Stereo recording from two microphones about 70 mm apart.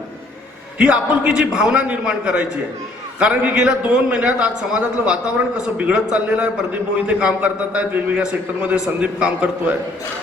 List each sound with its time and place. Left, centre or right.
0.8 s a man's voice: centre